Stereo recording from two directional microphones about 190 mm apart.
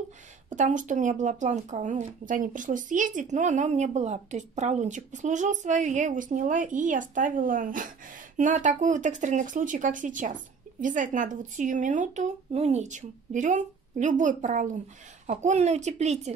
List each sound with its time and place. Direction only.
0.5 s speech: 40° right (ahead or behind)